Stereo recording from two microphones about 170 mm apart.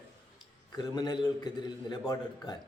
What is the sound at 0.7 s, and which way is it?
Speech, 25° left (ahead or behind).